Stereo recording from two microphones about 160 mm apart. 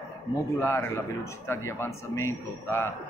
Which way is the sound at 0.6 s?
15° left (ahead or behind).